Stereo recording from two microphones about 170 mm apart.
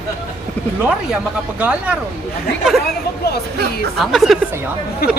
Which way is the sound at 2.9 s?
70° left (ahead or behind).